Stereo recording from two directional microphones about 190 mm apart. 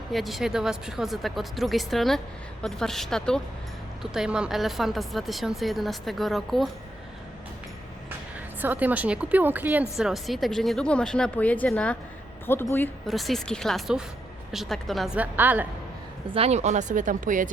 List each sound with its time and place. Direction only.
0.1 s speech: centre (ahead or behind)
8.6 s a woman's voice: 10° right (ahead or behind); by 12.9 s 10° left (ahead or behind)
13.1 s speech: centre (ahead or behind)
16.3 s speech: 35° right (ahead or behind)